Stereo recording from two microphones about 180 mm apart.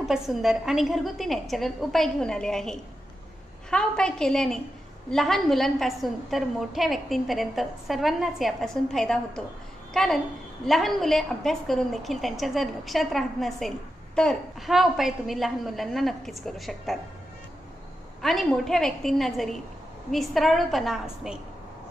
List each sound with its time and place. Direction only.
0.0 s a woman's voice: centre (ahead or behind)
18.2 s a woman's voice: centre (ahead or behind)